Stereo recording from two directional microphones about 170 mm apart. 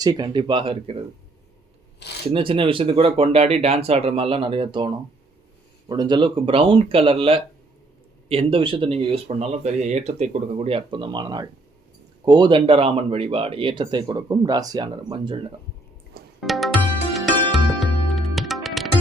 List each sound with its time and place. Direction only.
0.0 s speech: 25° right (ahead or behind)
2.3 s speech: 30° right (ahead or behind)
16.4 s music: centre (ahead or behind)